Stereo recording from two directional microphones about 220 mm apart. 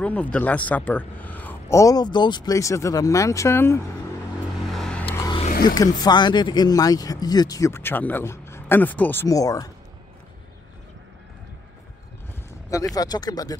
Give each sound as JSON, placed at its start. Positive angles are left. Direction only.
{"t": 0.0, "sound": "speech", "side_deg": 5}
{"t": 4.6, "sound": "vehicle", "side_deg": 0}
{"t": 5.1, "sound": "vehicle", "side_deg": 15}
{"t": 5.5, "sound": "a sound", "side_deg": 40}
{"t": 5.8, "sound": "speech", "side_deg": 20}
{"t": 12.6, "sound": "speech", "side_deg": 15}